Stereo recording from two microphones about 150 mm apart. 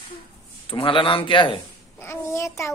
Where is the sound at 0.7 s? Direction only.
35° left (ahead or behind).